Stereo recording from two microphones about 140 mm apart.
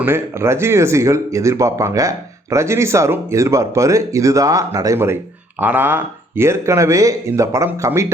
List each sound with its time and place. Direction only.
0.0 s speech: 20° right (ahead or behind)